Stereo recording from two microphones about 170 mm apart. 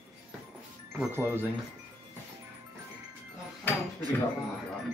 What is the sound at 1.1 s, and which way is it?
Speech, 10° right (ahead or behind).